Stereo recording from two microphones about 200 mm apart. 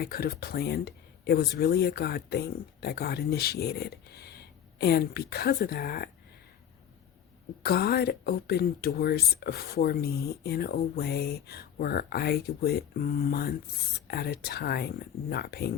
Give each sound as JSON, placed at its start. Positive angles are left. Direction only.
{"t": 0.0, "sound": "speech", "side_deg": 50}
{"t": 7.6, "sound": "speech", "side_deg": 50}